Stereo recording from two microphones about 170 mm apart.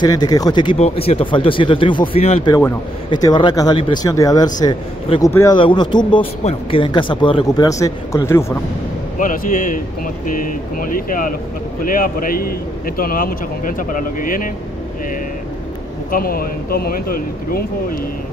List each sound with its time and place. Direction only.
0.0 s speech: 25° left (ahead or behind)
0.7 s speech: 35° left (ahead or behind)
2.5 s speech: 20° left (ahead or behind)
9.2 s a man's voice: 55° left (ahead or behind)
16.1 s a man's voice: 60° left (ahead or behind)